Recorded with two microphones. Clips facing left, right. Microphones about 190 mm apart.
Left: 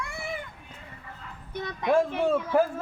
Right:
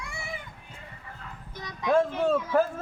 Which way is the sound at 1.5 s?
60° left (ahead or behind).